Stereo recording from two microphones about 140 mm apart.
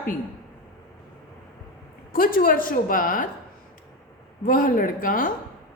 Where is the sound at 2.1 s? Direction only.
90° left.